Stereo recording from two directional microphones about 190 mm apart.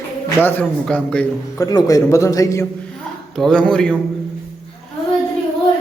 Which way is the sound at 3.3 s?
5° left (ahead or behind).